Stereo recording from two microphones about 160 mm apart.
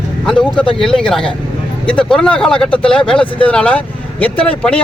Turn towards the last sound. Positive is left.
turn(degrees=5)  # may be behind; listen again after turning